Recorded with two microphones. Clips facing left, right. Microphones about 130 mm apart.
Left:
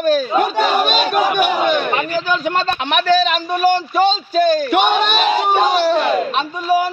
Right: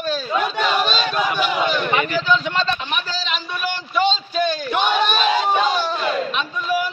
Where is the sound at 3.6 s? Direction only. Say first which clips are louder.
Left 6 dB; 40° left (ahead or behind).